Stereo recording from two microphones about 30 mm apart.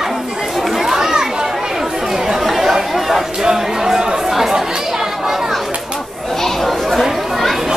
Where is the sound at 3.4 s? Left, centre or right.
Centre.